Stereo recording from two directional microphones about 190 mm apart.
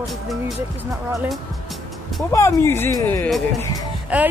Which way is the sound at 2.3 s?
15° left (ahead or behind).